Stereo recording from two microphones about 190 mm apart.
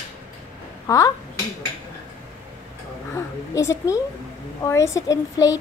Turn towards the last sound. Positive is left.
turn(degrees=20)  # may be behind; listen again after turning